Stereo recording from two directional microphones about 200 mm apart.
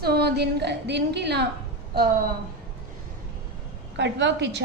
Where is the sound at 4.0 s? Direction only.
60° right (ahead or behind).